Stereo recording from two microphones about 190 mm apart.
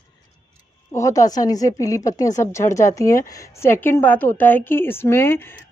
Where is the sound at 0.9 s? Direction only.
15° left (ahead or behind).